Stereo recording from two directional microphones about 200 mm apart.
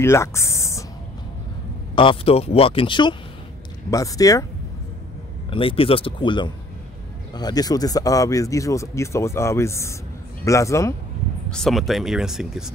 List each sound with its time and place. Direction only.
0.0 s a sound: 15° left (ahead or behind)
2.0 s speech: 25° left (ahead or behind)
5.5 s speech: 25° left (ahead or behind)
11.5 s speech: centre (ahead or behind)